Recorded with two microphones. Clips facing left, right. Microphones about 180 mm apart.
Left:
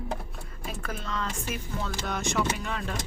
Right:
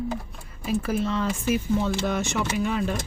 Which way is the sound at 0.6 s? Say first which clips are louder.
Right 11 dB; 5° right (ahead or behind).